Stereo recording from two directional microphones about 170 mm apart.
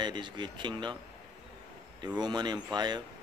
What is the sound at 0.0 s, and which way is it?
Speech, 25° right (ahead or behind).